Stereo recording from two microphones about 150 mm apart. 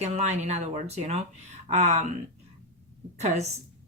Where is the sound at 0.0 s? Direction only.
50° right (ahead or behind).